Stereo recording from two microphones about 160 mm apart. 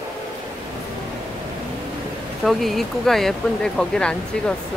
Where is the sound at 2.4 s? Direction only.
Centre (ahead or behind).